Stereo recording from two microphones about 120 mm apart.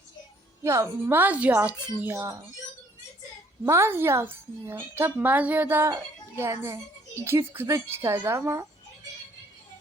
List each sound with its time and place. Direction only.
0.6 s a woman's voice: 25° right (ahead or behind)
3.7 s a woman's voice: 20° right (ahead or behind)